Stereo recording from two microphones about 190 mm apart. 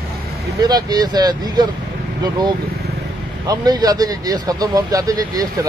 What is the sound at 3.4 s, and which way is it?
Speech, 20° right (ahead or behind).